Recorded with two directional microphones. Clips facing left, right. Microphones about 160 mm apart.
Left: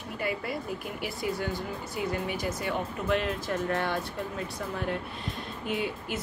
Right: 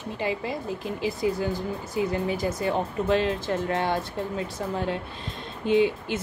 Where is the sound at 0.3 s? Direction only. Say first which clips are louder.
Right 2 dB; 25° right (ahead or behind).